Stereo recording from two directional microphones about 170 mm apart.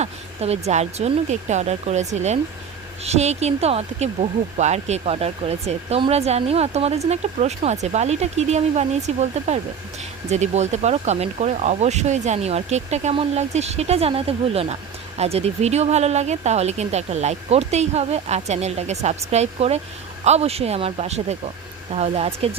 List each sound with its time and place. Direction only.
0.0 s speech: 40° right (ahead or behind)